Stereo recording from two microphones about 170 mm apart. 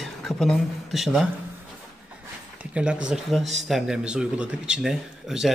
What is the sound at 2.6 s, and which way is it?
Speech, 5° right (ahead or behind).